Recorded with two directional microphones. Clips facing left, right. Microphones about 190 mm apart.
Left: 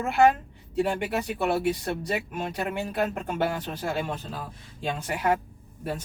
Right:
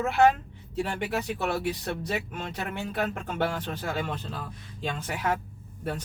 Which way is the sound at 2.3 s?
10° left (ahead or behind).